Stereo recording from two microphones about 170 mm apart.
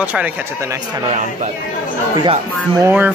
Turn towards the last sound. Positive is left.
turn(degrees=-10)  # may be behind; listen again after turning